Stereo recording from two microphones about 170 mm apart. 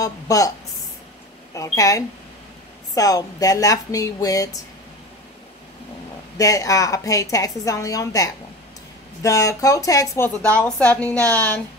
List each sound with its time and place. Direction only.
0.0 s a woman's voice: 20° left (ahead or behind)
1.5 s a woman's voice: 20° left (ahead or behind)
6.3 s a woman's voice: 20° left (ahead or behind)